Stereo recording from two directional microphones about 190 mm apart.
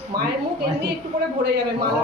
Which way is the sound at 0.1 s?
55° right (ahead or behind).